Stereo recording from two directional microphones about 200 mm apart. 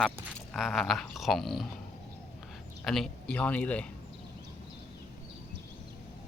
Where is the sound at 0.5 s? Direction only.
Centre (ahead or behind).